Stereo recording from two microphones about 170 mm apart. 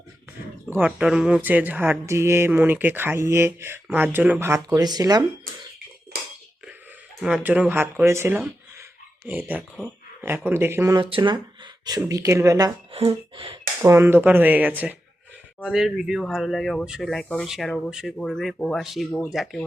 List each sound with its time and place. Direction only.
0.8 s speech: 5° right (ahead or behind); by 5.2 s 25° right (ahead or behind)
7.2 s speech: 5° right (ahead or behind)
10.9 s speech: 30° right (ahead or behind)
12.9 s speech: 30° right (ahead or behind)
13.8 s speech: 15° right (ahead or behind)